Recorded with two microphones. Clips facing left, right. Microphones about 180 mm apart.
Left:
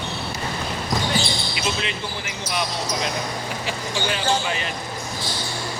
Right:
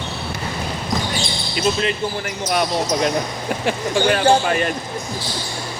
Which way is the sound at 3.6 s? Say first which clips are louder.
Right 10 dB; 55° right (ahead or behind).